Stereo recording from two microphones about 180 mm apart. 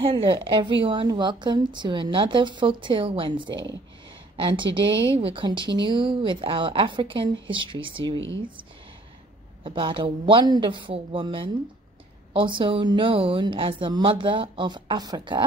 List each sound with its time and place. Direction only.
0.0 s a woman's voice: 30° right (ahead or behind)
9.6 s a woman's voice: 30° right (ahead or behind)